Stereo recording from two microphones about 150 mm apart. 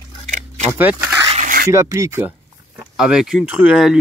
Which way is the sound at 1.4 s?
70° right (ahead or behind).